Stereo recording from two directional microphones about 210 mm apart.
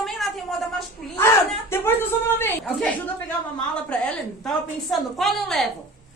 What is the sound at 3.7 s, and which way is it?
A woman's voice, 5° left (ahead or behind).